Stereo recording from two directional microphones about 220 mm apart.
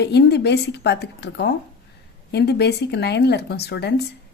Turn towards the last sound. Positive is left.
turn(degrees=50)  # may be behind; listen again after turning